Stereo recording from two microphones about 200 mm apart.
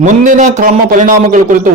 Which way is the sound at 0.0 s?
40° right (ahead or behind).